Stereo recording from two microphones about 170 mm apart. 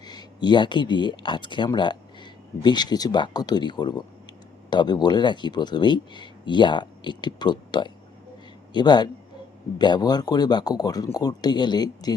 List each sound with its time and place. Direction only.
0.0 s speech: 25° left (ahead or behind)